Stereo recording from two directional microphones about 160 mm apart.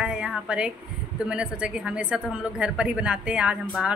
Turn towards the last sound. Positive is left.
turn(degrees=-5)  # may be behind; listen again after turning